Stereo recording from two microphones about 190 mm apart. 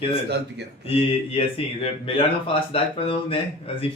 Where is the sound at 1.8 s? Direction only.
30° left (ahead or behind).